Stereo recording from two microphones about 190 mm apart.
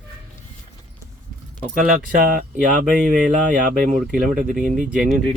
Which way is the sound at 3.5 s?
45° right (ahead or behind).